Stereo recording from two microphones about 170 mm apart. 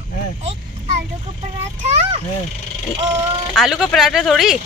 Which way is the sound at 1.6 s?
40° right (ahead or behind).